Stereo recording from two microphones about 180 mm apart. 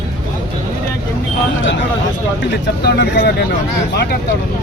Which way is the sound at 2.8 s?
65° left (ahead or behind).